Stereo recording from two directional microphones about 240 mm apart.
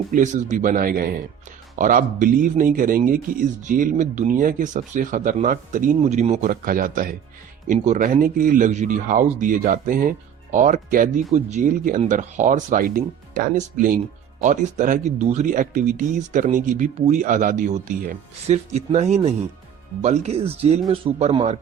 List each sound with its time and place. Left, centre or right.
0.1 s speech: right